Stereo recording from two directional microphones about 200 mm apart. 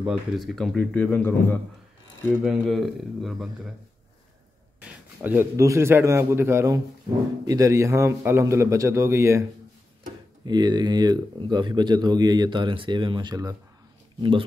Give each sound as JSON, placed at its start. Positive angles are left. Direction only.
{"t": 0.0, "sound": "a man's voice", "side_deg": 0}
{"t": 4.7, "sound": "a man's voice", "side_deg": -10}
{"t": 10.4, "sound": "speech", "side_deg": -20}